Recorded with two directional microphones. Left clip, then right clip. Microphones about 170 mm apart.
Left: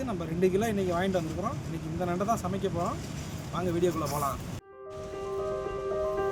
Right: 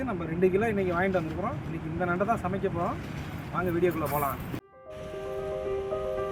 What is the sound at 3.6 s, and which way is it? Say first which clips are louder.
Speech: right 2 dB; 10° left (ahead or behind).